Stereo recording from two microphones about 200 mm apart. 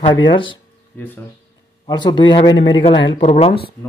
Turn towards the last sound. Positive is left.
turn(degrees=30)  # may be behind; listen again after turning